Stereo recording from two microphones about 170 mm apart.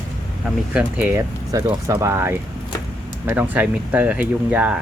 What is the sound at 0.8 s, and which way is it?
Speech, 10° right (ahead or behind).